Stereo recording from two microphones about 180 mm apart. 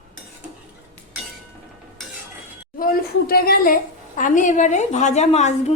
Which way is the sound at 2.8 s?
55° left (ahead or behind).